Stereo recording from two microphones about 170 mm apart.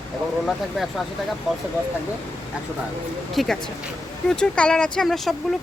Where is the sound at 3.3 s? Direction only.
Centre (ahead or behind).